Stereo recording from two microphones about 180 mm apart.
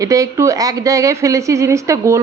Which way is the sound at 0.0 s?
20° right (ahead or behind).